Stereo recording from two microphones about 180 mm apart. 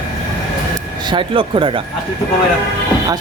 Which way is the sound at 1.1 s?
30° right (ahead or behind).